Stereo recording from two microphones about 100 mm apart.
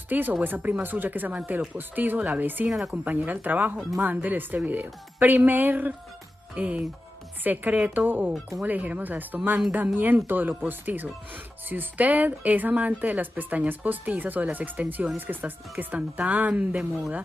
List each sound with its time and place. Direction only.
0.1 s a woman's voice: 20° right (ahead or behind)